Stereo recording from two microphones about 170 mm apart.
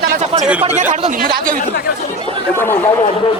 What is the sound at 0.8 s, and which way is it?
Speech, 45° right (ahead or behind).